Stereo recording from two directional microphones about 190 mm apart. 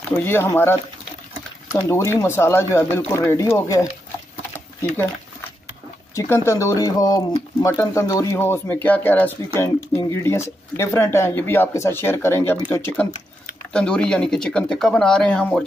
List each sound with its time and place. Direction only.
0.2 s speech: 10° left (ahead or behind)
1.8 s speech: 15° left (ahead or behind)
6.1 s speech: 15° left (ahead or behind)